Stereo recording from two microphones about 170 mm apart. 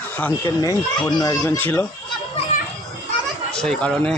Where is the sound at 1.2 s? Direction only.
20° left (ahead or behind).